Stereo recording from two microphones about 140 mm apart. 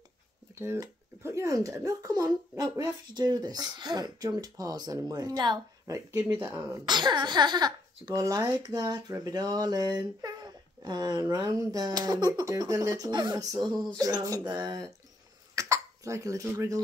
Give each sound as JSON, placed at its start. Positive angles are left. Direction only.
{"t": 0.6, "sound": "speech", "side_deg": -20}
{"t": 6.9, "sound": "speech", "side_deg": -30}
{"t": 15.5, "sound": "cough", "side_deg": -20}